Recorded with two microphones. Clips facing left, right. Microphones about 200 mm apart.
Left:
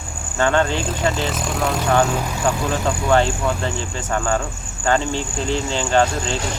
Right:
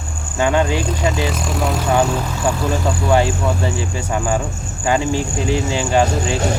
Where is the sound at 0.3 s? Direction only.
10° right (ahead or behind).